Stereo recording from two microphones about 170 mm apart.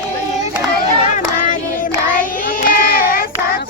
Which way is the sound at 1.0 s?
45° left (ahead or behind).